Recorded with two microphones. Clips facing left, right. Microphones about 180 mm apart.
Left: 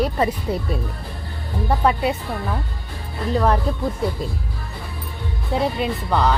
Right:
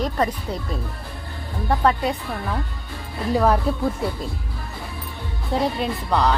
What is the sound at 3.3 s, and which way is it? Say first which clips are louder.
Speech: right 1 dB; 10° right (ahead or behind).